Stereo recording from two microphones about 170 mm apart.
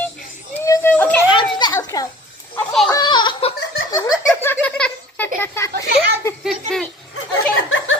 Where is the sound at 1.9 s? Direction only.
20° left (ahead or behind).